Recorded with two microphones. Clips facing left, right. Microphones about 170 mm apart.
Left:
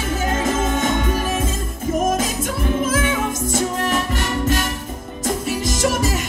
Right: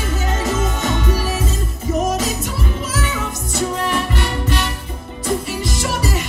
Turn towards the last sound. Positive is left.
turn(degrees=45)  # may be behind; listen again after turning